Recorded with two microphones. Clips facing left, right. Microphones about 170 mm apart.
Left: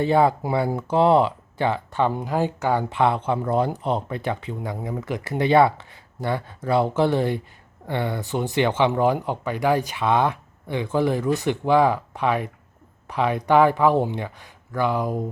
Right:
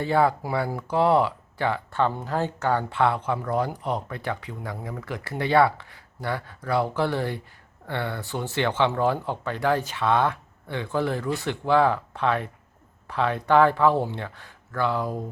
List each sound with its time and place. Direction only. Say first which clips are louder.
0.0 s speech: left 3 dB; 20° left (ahead or behind)